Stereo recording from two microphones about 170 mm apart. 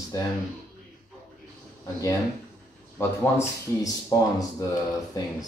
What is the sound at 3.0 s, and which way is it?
A man's voice, 20° left (ahead or behind).